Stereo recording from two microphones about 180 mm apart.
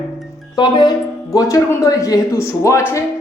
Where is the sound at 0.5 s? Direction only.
25° left (ahead or behind).